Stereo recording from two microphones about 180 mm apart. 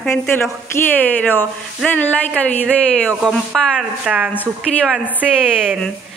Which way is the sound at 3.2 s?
Centre (ahead or behind).